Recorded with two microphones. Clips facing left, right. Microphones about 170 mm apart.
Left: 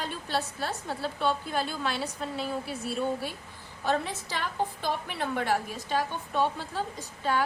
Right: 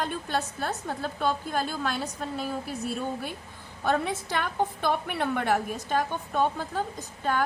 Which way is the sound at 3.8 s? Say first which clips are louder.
Right 2 dB; 55° right (ahead or behind).